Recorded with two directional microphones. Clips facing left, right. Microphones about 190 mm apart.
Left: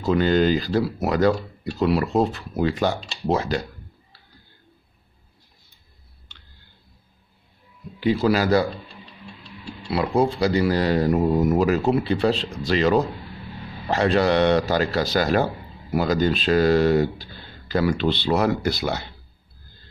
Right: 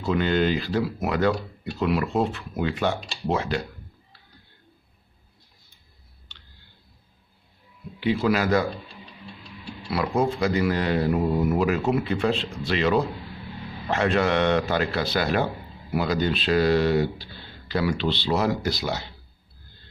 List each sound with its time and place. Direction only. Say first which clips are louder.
0.0 s speech: left 4 dB; 35° left (ahead or behind)
8.0 s speech: left 3 dB; 40° left (ahead or behind)
9.8 s a man's voice: left 3 dB; 30° left (ahead or behind); by 19.0 s 55° left (ahead or behind)